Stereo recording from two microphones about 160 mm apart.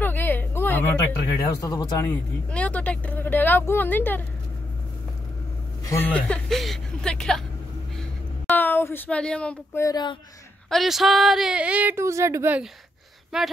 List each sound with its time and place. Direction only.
0.0 s a sound: 10° left (ahead or behind)
1.6 s speech: 25° left (ahead or behind)
2.0 s speech: 10° left (ahead or behind)
5.9 s speech: 10° left (ahead or behind)
8.0 s a sound: 5° left (ahead or behind)
9.8 s speech: 25° left (ahead or behind)
10.7 s speech: centre (ahead or behind)
13.3 s speech: 5° right (ahead or behind)